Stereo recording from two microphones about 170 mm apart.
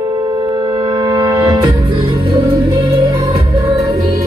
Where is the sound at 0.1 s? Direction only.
25° right (ahead or behind).